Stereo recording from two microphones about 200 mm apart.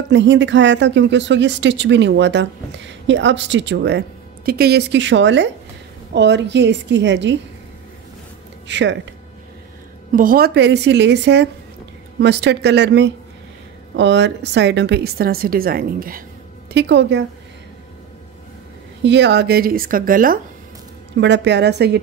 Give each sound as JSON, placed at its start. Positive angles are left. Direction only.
{"t": 0.1, "sound": "speech", "side_deg": -65}
{"t": 8.6, "sound": "speech", "side_deg": -65}
{"t": 10.1, "sound": "speech", "side_deg": -45}
{"t": 16.7, "sound": "speech", "side_deg": -60}
{"t": 19.0, "sound": "speech", "side_deg": -60}
{"t": 21.2, "sound": "speech", "side_deg": -60}